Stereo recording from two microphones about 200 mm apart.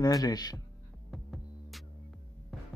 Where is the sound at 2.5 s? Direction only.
Centre (ahead or behind).